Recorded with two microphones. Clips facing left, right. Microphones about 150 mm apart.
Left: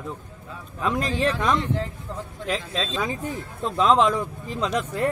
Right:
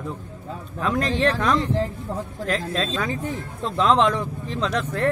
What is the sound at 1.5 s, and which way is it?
Speech, 30° right (ahead or behind).